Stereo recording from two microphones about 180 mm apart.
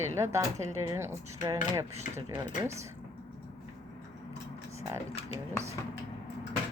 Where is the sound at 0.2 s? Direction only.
15° right (ahead or behind).